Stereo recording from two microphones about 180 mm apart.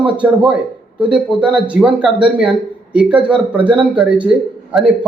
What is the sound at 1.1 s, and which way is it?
Speech, 5° right (ahead or behind).